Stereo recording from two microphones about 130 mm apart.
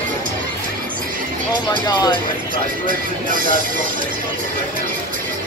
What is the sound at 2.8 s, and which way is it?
Speech, 90° right.